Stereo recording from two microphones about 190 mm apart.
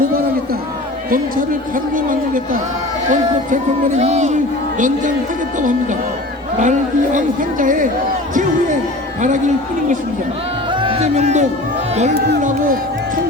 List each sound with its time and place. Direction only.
1.1 s a man's voice: 45° right (ahead or behind)
6.6 s a man's voice: 40° right (ahead or behind)
8.4 s music: 40° right (ahead or behind)
10.7 s music: 25° right (ahead or behind)